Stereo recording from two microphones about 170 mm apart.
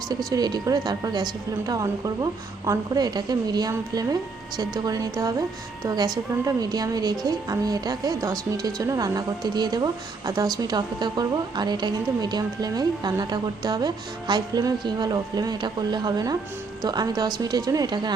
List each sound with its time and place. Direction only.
0.3 s speech: 20° right (ahead or behind)